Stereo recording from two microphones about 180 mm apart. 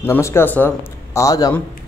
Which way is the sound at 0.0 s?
15° left (ahead or behind).